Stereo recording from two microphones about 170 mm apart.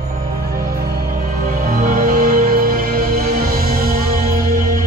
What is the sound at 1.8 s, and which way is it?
Music, 55° right (ahead or behind).